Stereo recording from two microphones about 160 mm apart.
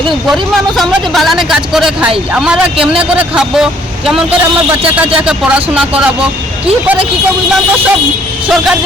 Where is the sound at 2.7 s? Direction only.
35° right (ahead or behind).